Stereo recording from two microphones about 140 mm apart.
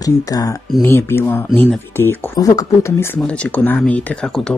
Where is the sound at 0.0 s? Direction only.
25° left (ahead or behind).